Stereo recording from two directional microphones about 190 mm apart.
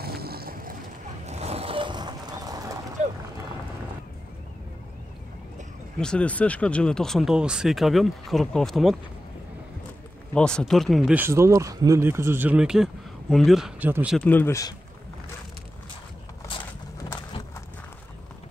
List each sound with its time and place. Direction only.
0.0 s vehicle: 55° right (ahead or behind)
1.2 s vehicle: 35° right (ahead or behind); by 2.7 s 20° right (ahead or behind)
3.0 s a sound: 40° right (ahead or behind)
5.9 s speech: 5° left (ahead or behind)
10.3 s speech: 5° left (ahead or behind)
14.1 s speech: 10° left (ahead or behind)
17.3 s horse: 20° left (ahead or behind)